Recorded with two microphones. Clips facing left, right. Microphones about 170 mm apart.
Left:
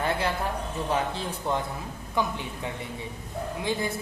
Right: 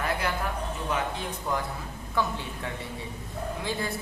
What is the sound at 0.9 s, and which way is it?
A man's voice, 30° left (ahead or behind).